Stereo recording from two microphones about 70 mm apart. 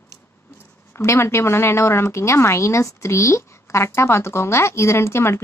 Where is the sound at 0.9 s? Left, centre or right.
Left.